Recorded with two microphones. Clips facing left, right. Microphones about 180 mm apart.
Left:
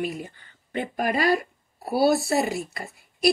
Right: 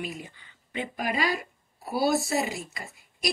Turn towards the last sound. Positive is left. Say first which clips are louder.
# left 8 dB
turn(degrees=60)  # may be behind; listen again after turning